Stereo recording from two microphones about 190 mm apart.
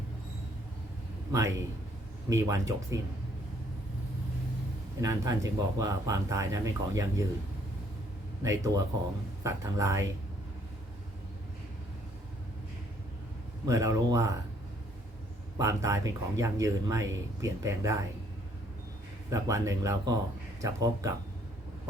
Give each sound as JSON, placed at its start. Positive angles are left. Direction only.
{"t": 1.3, "sound": "speech", "side_deg": -15}
{"t": 4.9, "sound": "speech", "side_deg": -15}
{"t": 8.4, "sound": "speech", "side_deg": -20}
{"t": 13.7, "sound": "speech", "side_deg": -15}
{"t": 15.5, "sound": "speech", "side_deg": -15}
{"t": 19.3, "sound": "speech", "side_deg": -15}